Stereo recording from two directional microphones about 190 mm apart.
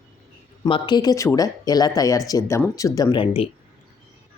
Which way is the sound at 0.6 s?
20° left (ahead or behind).